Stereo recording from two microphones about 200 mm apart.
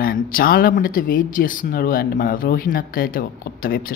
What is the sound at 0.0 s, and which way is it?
Speech, 45° left (ahead or behind).